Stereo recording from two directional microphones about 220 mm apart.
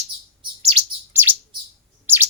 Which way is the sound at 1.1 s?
10° right (ahead or behind).